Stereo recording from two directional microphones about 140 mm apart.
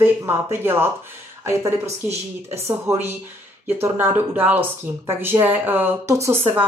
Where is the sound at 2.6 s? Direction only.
15° right (ahead or behind).